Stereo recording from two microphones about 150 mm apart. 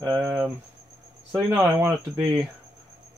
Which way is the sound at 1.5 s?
15° right (ahead or behind).